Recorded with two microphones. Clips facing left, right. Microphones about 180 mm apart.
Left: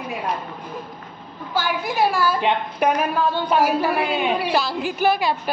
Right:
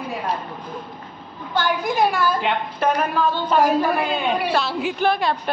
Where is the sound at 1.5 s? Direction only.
5° left (ahead or behind).